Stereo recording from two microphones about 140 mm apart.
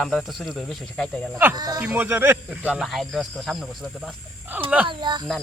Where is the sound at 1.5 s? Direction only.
25° right (ahead or behind).